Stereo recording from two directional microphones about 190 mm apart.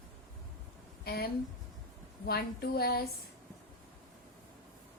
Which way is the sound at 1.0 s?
55° left (ahead or behind).